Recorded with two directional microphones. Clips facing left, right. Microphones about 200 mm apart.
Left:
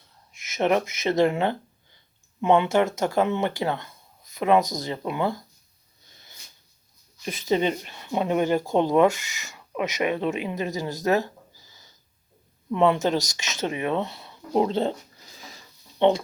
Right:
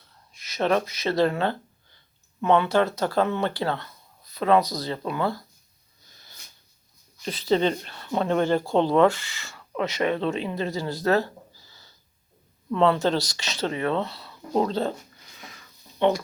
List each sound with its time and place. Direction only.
0.4 s speech: 20° left (ahead or behind)
7.3 s speech: 15° left (ahead or behind)
15.3 s a sound: 30° left (ahead or behind)